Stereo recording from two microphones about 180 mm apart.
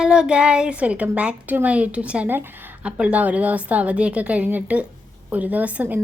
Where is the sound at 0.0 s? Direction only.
5° right (ahead or behind).